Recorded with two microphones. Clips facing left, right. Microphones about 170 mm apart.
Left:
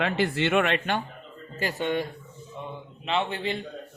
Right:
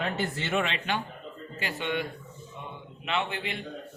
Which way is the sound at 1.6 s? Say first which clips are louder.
Left 4 dB; 40° left (ahead or behind).